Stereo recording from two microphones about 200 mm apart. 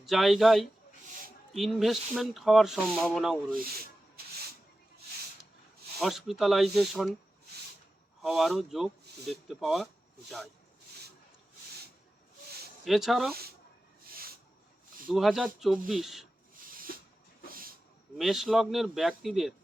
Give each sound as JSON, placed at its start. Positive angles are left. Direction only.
{"t": 0.0, "sound": "speech", "side_deg": 0}
{"t": 6.0, "sound": "speech", "side_deg": 0}
{"t": 8.2, "sound": "speech", "side_deg": 0}
{"t": 12.8, "sound": "speech", "side_deg": 0}
{"t": 15.1, "sound": "speech", "side_deg": 0}
{"t": 16.6, "sound": "a sound", "side_deg": -45}
{"t": 18.2, "sound": "speech", "side_deg": 0}